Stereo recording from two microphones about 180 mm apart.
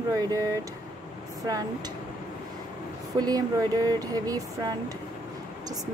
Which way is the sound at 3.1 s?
20° right (ahead or behind).